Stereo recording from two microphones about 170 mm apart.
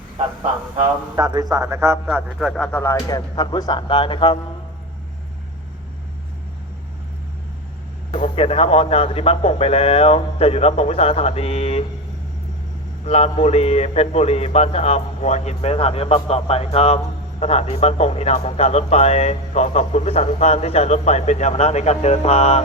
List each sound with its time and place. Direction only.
1.1 s a man's voice: 25° right (ahead or behind)
2.4 s speech: centre (ahead or behind)
2.8 s speech: 20° left (ahead or behind)
8.1 s speech: 35° left (ahead or behind)
13.1 s speech: 35° left (ahead or behind)